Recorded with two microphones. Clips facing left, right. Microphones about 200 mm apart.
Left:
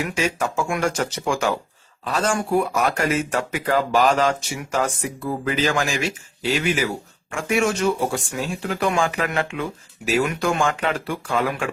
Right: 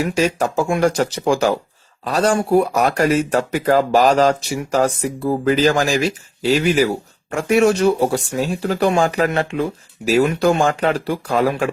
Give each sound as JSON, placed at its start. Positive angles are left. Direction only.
{"t": 0.0, "sound": "speech", "side_deg": -35}